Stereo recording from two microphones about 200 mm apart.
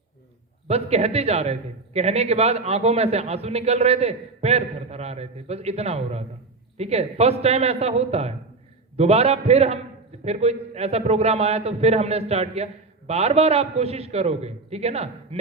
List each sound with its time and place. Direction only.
0.7 s a man's voice: 30° right (ahead or behind)